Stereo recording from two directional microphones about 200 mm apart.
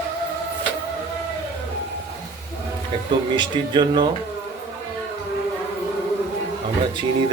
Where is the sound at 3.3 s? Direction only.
25° right (ahead or behind).